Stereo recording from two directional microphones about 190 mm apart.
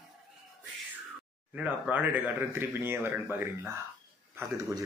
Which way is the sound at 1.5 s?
10° right (ahead or behind).